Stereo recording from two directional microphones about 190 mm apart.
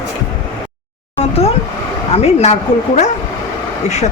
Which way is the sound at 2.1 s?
35° left (ahead or behind).